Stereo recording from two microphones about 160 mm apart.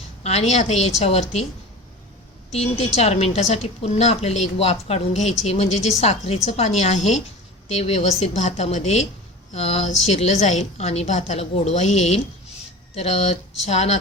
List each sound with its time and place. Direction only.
0.2 s a woman's voice: 45° left (ahead or behind)
2.6 s a woman's voice: 40° left (ahead or behind)